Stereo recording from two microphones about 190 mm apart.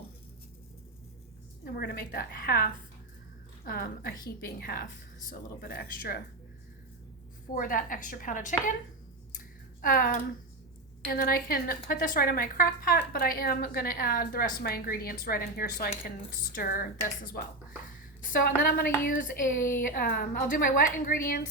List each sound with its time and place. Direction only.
1.6 s a woman's voice: 50° left (ahead or behind)
3.7 s speech: 50° left (ahead or behind)
7.5 s speech: 45° left (ahead or behind)
9.8 s speech: 50° left (ahead or behind)
18.2 s a woman's voice: 50° left (ahead or behind)